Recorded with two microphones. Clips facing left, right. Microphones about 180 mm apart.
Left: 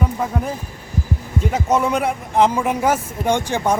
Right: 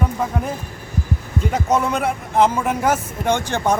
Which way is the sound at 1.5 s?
10° left (ahead or behind).